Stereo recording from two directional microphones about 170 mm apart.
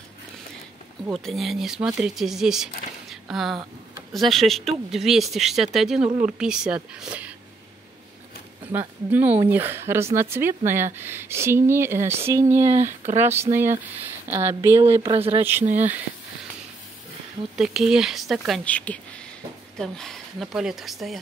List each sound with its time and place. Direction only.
1.1 s speech: centre (ahead or behind)
3.1 s a sound: centre (ahead or behind)
4.1 s speech: centre (ahead or behind)
8.6 s speech: 10° right (ahead or behind)
12.7 s speech: 45° right (ahead or behind)
13.2 s speech: 15° right (ahead or behind)
15.1 s speech: 35° right (ahead or behind)
15.7 s speech: 10° right (ahead or behind)
17.6 s speech: 5° right (ahead or behind)